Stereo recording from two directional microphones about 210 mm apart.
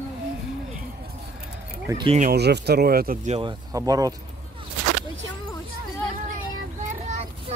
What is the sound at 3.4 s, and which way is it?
Speech, 20° right (ahead or behind).